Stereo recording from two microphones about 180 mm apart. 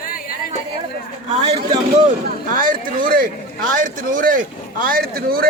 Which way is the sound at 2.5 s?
50° right (ahead or behind).